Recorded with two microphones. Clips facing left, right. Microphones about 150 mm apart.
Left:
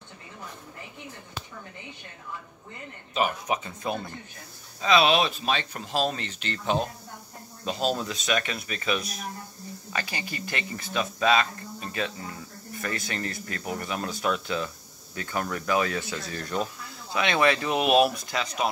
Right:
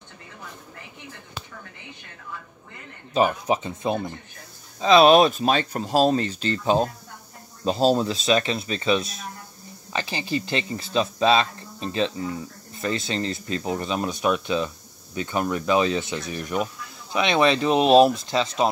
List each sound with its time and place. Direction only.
3.2 s speech: 30° right (ahead or behind)
4.7 s speech: 35° right (ahead or behind)